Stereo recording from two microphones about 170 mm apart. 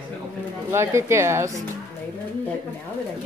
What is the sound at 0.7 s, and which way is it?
Music, 15° right (ahead or behind).